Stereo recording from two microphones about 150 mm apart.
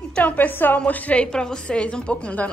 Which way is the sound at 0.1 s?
10° left (ahead or behind).